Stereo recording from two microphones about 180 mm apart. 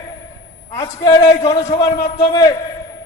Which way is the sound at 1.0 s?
20° left (ahead or behind).